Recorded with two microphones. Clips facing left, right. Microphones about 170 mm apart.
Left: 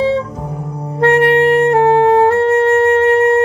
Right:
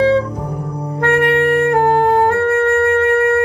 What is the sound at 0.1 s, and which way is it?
Music, 25° left (ahead or behind).